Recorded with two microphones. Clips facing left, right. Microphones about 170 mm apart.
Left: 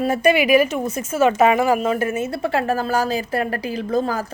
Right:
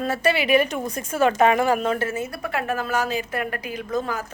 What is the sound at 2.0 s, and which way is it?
A woman's voice, 20° left (ahead or behind).